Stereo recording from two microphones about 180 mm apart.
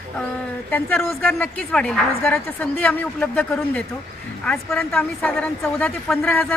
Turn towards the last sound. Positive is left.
turn(degrees=5)  # may be behind; listen again after turning